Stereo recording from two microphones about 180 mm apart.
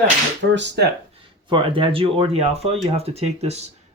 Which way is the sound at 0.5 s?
80° right.